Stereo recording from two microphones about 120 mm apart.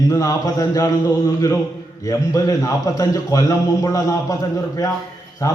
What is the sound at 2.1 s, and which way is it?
A man's voice, 30° left (ahead or behind).